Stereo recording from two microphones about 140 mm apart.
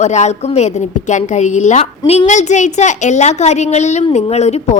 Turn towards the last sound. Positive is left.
turn(degrees=50)  # may be behind; listen again after turning